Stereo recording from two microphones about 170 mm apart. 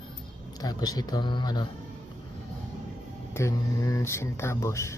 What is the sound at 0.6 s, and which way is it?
Speech, 25° left (ahead or behind).